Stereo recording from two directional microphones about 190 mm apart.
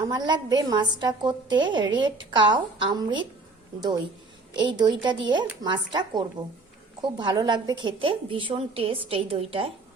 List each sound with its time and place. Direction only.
0.0 s a woman's voice: 20° right (ahead or behind)